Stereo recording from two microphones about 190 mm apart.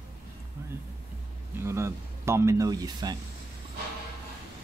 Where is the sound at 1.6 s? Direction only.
15° right (ahead or behind).